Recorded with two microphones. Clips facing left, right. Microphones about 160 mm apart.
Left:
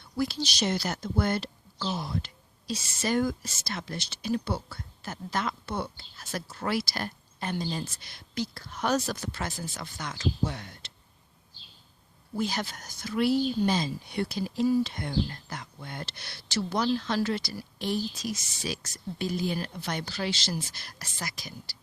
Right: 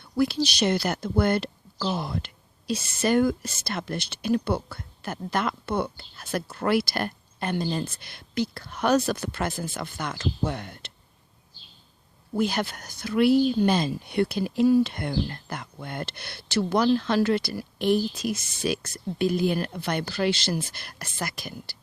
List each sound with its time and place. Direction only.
0.0 s speech: 60° right (ahead or behind)
12.4 s speech: 60° right (ahead or behind)